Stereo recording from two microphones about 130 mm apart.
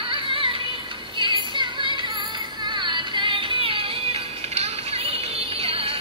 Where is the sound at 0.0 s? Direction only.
40° right (ahead or behind).